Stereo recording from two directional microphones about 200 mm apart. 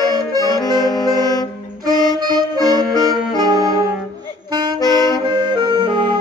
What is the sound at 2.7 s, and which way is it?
Music, 20° right (ahead or behind).